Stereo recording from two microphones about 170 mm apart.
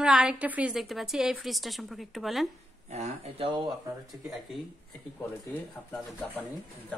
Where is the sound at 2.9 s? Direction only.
40° right (ahead or behind).